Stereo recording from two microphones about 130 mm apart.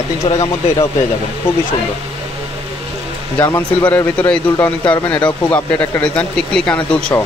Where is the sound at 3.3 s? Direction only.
20° left (ahead or behind).